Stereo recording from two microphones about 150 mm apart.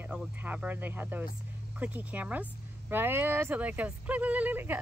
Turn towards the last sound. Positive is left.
turn(degrees=-10)  # may be behind; listen again after turning